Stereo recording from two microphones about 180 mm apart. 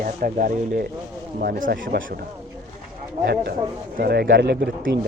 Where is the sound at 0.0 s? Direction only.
50° right (ahead or behind).